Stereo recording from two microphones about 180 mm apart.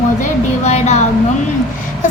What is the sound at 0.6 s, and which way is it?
Speech, 40° left (ahead or behind).